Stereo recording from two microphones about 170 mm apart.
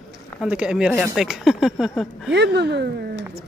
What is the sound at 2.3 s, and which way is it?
Speech, 85° right.